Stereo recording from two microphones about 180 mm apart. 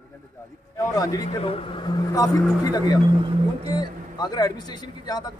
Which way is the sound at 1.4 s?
30° left (ahead or behind).